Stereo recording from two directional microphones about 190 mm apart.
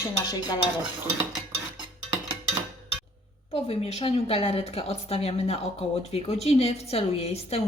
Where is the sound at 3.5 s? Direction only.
35° left (ahead or behind).